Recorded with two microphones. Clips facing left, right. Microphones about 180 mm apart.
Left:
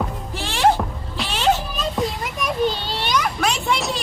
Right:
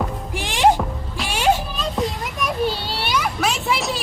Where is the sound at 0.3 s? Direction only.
15° right (ahead or behind).